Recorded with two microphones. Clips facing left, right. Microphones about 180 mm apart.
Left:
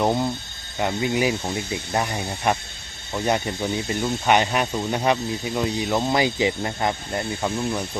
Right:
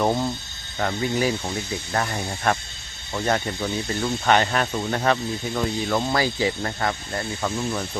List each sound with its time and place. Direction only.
0.0 s speech: 15° left (ahead or behind)